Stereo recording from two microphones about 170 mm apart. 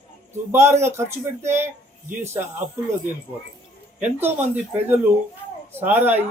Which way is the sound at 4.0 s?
10° right (ahead or behind).